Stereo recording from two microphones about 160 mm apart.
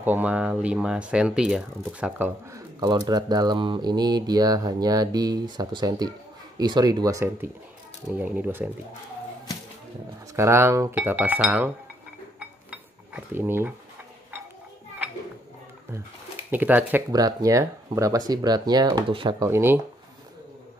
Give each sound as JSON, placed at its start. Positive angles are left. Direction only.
{"t": 0.0, "sound": "speech", "side_deg": -10}
{"t": 2.8, "sound": "speech", "side_deg": -25}
{"t": 10.3, "sound": "speech", "side_deg": -15}
{"t": 12.4, "sound": "dishes", "side_deg": -10}
{"t": 16.4, "sound": "speech", "side_deg": -10}
{"t": 17.1, "sound": "speech", "side_deg": -20}
{"t": 19.5, "sound": "speech", "side_deg": -15}